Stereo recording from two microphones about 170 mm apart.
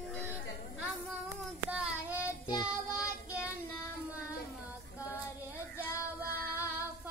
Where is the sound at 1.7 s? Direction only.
5° right (ahead or behind).